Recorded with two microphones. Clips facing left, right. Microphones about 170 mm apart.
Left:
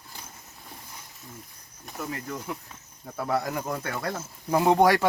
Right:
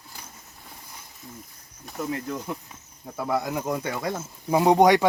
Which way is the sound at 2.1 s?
15° right (ahead or behind).